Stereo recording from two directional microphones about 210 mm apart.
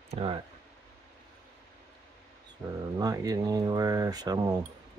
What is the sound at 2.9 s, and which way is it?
Speech, 20° right (ahead or behind).